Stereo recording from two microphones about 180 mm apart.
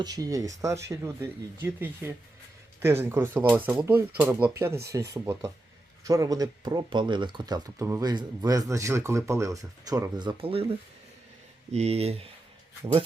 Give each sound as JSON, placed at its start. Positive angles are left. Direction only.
{"t": 0.0, "sound": "speech", "side_deg": -20}
{"t": 11.7, "sound": "speech", "side_deg": -35}